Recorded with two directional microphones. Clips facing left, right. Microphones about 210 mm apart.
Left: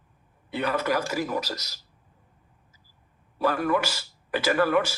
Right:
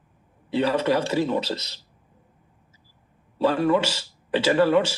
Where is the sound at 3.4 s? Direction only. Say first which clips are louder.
Right 4 dB; 25° right (ahead or behind).